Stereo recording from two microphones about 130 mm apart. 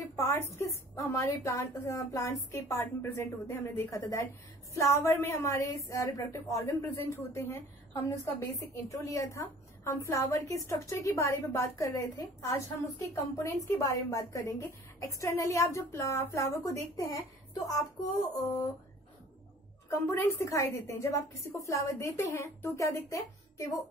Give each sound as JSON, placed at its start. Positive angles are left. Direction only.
{"t": 0.2, "sound": "a woman's voice", "side_deg": 20}
{"t": 19.9, "sound": "a woman's voice", "side_deg": 20}